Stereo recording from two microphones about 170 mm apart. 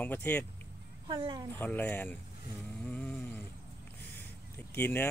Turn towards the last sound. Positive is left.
turn(degrees=15)  # may be behind; listen again after turning